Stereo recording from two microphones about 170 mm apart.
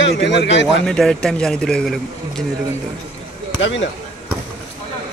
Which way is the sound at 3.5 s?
90° left.